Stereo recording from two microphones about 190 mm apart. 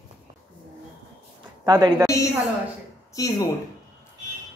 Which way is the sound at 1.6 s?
20° right (ahead or behind).